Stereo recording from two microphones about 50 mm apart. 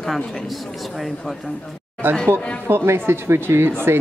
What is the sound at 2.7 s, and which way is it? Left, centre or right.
Speech, right.